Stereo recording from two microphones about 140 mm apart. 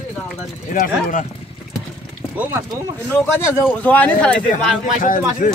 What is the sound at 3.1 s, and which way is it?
Speech, 15° left (ahead or behind).